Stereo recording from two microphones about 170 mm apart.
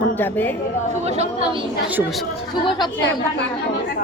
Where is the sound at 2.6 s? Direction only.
25° left (ahead or behind).